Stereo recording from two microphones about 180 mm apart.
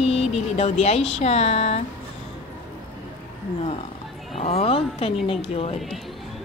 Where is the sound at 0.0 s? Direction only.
35° left (ahead or behind).